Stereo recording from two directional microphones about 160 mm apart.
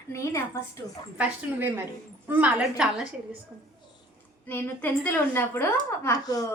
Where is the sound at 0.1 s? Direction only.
20° left (ahead or behind).